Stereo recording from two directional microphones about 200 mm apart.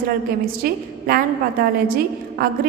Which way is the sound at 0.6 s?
45° right (ahead or behind).